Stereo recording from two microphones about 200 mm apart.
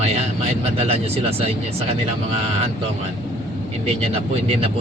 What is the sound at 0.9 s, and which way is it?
Speech, 30° right (ahead or behind).